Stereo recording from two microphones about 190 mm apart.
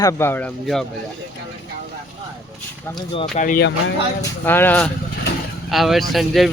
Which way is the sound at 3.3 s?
45° left (ahead or behind).